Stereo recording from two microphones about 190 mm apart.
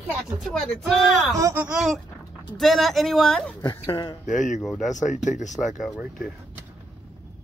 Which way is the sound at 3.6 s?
25° left (ahead or behind).